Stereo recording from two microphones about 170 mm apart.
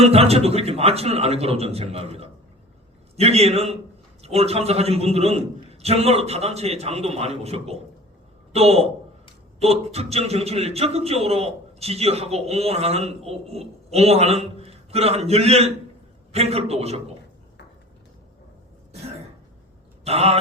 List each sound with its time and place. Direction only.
0.0 s a man's voice: 35° right (ahead or behind)
20.1 s a man's voice: 35° right (ahead or behind)